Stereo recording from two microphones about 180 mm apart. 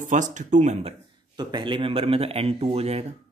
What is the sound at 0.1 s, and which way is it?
Speech, 45° right (ahead or behind).